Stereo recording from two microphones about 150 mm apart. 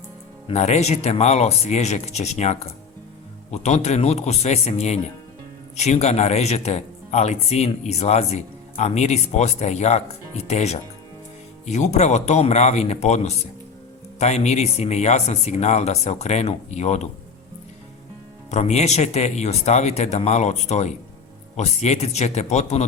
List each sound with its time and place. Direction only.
0.4 s speech: 45° left (ahead or behind)
18.5 s speech: 50° left (ahead or behind)